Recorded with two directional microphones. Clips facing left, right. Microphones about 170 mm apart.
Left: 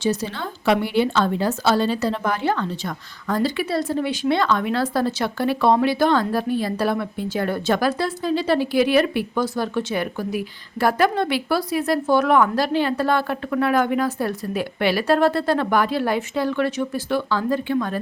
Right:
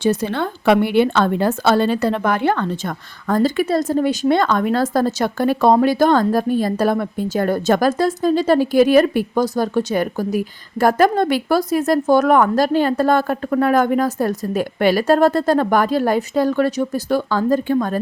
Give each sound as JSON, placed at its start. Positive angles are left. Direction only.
{"t": 0.0, "sound": "speech", "side_deg": -55}